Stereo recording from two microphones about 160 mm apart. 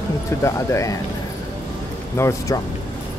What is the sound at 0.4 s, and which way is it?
Speech, 20° left (ahead or behind).